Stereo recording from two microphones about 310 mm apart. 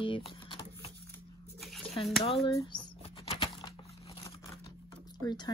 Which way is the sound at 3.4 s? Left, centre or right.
Centre.